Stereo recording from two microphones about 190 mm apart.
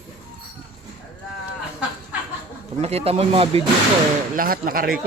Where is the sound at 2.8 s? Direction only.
30° right (ahead or behind).